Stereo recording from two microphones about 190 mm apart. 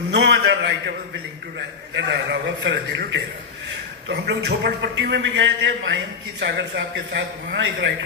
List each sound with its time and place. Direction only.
0.1 s a man's voice: 65° right (ahead or behind)